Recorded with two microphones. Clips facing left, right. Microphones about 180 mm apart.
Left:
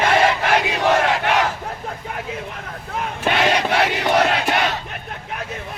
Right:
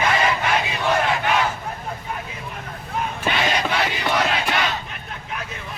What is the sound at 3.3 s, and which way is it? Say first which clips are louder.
Crowd: left 5 dB; 65° left (ahead or behind).